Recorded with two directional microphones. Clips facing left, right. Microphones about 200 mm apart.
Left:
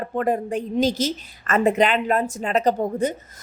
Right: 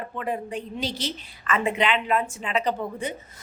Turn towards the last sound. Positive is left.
turn(degrees=40)  # may be behind; listen again after turning